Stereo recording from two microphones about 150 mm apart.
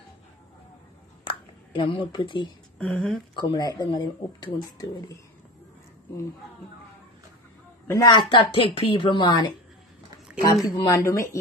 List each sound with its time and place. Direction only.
1.2 s a sound: 35° left (ahead or behind)
2.1 s a woman's voice: 30° left (ahead or behind)
2.8 s speech: 5° left (ahead or behind)
3.3 s speech: 25° left (ahead or behind)
7.9 s a woman's voice: 25° left (ahead or behind)